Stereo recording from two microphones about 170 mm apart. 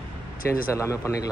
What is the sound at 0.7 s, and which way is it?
Speech, 15° left (ahead or behind).